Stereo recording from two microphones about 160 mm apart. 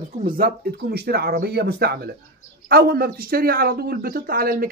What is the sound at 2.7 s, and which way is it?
Speech, 70° right (ahead or behind).